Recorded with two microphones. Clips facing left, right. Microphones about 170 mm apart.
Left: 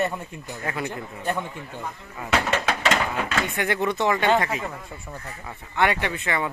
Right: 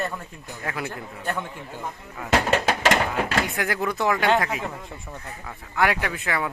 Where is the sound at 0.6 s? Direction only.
Centre (ahead or behind).